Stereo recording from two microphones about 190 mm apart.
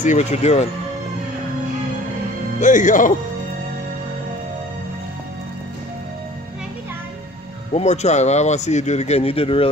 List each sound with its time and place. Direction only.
0.0 s speech: 40° left (ahead or behind)
2.6 s speech: 40° left (ahead or behind)
7.7 s speech: 35° left (ahead or behind)